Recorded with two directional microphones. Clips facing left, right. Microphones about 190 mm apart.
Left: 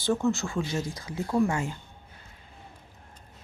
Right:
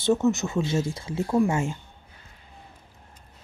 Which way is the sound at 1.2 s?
15° right (ahead or behind).